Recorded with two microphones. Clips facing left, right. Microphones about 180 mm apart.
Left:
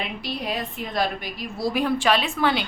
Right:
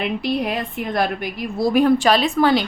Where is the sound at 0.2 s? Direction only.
60° right (ahead or behind).